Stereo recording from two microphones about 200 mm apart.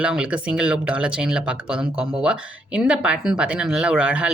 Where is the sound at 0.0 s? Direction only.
5° right (ahead or behind).